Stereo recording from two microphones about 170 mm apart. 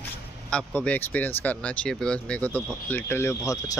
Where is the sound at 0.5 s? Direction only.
5° left (ahead or behind).